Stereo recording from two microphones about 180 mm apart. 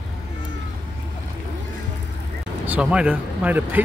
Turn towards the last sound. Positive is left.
turn(degrees=-10)  # may be behind; listen again after turning